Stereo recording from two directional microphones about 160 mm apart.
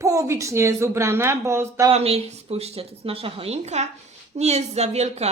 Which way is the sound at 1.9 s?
40° right (ahead or behind).